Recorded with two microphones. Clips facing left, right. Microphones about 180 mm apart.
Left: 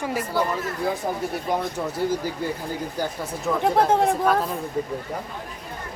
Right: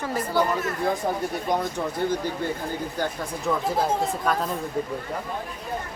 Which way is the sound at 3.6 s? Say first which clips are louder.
Left 8 dB; 65° left (ahead or behind).